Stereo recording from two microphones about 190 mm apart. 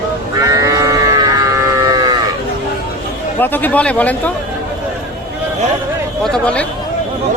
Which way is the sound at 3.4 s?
10° left (ahead or behind).